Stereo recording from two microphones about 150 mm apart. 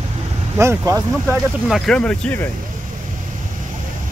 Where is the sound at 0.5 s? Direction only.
20° right (ahead or behind).